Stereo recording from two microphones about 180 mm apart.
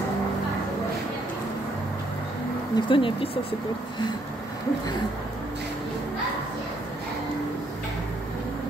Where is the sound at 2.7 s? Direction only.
30° left (ahead or behind).